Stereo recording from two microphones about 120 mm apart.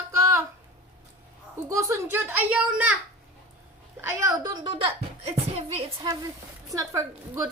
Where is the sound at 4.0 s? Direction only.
25° right (ahead or behind); by 5.8 s 55° right (ahead or behind).